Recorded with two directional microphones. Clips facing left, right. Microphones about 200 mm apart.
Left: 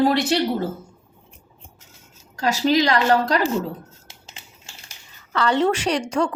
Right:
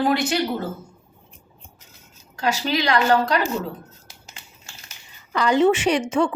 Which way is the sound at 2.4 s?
40° left (ahead or behind).